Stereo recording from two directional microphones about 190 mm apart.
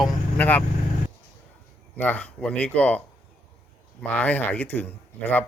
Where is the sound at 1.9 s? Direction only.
10° left (ahead or behind).